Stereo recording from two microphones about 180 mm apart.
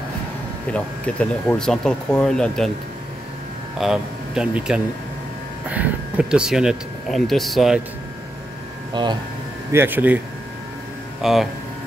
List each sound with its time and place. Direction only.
0.7 s speech: 5° left (ahead or behind)
3.7 s speech: centre (ahead or behind)
8.9 s speech: 25° right (ahead or behind)
9.7 s speech: 10° right (ahead or behind)